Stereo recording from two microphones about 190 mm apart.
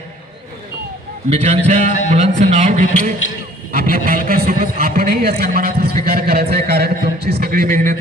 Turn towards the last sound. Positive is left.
turn(degrees=-45)  # may be behind; listen again after turning